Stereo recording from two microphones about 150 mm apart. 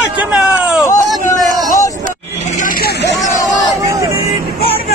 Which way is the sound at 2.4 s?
60° left (ahead or behind).